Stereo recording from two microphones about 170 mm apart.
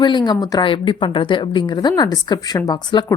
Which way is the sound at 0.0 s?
25° left (ahead or behind).